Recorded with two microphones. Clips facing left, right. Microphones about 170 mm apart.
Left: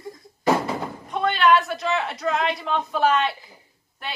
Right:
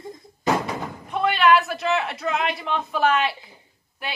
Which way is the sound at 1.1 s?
5° right (ahead or behind).